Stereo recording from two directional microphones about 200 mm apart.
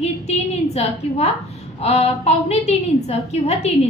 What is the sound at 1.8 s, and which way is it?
A woman's voice, 30° left (ahead or behind).